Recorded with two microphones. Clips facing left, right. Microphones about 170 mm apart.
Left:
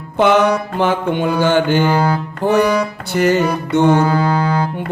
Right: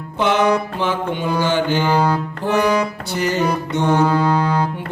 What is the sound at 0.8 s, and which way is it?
Mantra, 55° left (ahead or behind).